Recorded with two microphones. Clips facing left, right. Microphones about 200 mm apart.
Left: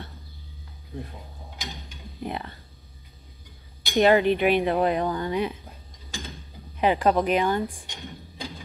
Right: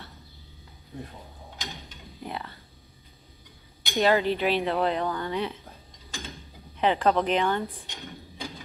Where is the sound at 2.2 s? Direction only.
20° left (ahead or behind).